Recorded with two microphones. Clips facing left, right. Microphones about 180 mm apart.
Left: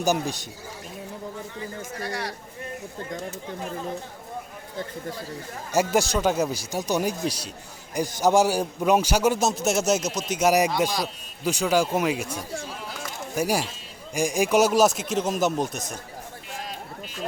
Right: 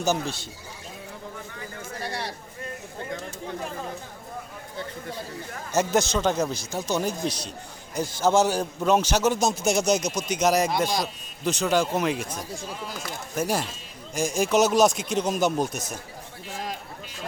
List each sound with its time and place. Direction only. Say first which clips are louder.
0.0 s a man's voice: left 2 dB; 15° left (ahead or behind)
2.0 s speech: left 1 dB; 30° right (ahead or behind)
5.7 s a man's voice: left 1 dB; 10° left (ahead or behind)
10.7 s a man's voice: even; 15° right (ahead or behind)
11.0 s a man's voice: even; 10° left (ahead or behind)